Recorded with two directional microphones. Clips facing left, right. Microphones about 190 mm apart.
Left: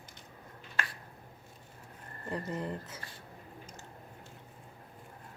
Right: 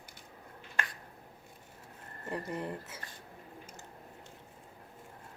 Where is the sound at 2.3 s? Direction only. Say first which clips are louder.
Left 1 dB; 15° right (ahead or behind).